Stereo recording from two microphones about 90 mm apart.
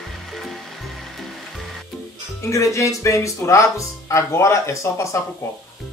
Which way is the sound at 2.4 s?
35° left (ahead or behind).